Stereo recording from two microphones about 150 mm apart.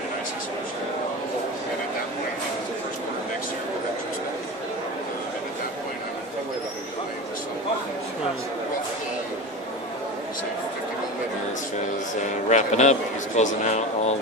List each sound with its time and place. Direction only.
12.4 s speech: 50° left (ahead or behind)